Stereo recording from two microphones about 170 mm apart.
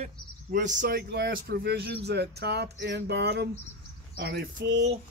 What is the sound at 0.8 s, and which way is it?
Speech, 80° right.